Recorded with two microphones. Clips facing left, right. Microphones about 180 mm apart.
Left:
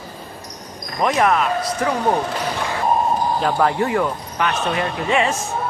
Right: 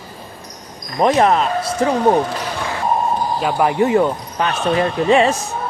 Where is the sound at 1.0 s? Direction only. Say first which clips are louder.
Right 4 dB; 30° right (ahead or behind).